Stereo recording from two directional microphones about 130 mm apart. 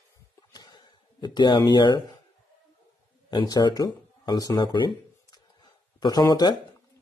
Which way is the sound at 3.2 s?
30° left (ahead or behind).